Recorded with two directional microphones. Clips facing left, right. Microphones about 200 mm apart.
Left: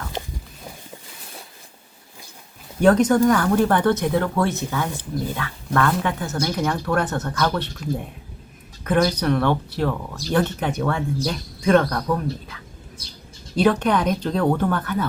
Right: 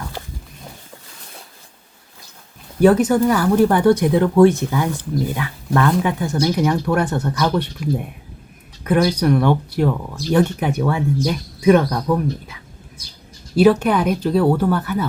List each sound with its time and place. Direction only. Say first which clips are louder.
2.8 s speech: right 2 dB; 5° right (ahead or behind)
13.6 s speech: right 5 dB; 10° right (ahead or behind)